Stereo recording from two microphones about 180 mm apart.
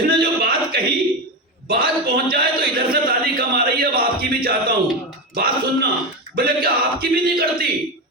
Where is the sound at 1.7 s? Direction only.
55° right (ahead or behind).